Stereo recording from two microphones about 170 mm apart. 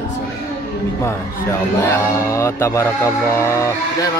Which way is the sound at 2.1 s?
15° left (ahead or behind).